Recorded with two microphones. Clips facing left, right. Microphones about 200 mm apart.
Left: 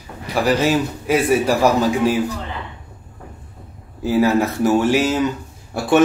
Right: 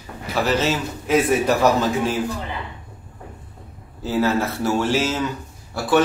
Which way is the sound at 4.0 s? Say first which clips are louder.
Left 4 dB; 10° left (ahead or behind).